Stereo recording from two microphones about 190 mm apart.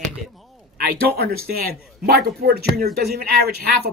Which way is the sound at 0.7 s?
55° right (ahead or behind).